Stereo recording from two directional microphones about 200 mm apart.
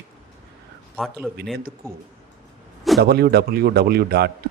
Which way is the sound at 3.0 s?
50° right (ahead or behind).